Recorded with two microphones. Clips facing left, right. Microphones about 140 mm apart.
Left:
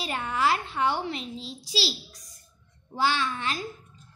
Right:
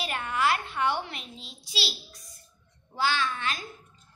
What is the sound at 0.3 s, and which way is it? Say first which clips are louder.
A woman's voice: left 1 dB; 30° left (ahead or behind).